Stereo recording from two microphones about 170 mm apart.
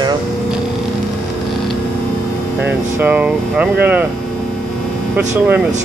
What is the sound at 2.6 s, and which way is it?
Speech, 10° right (ahead or behind).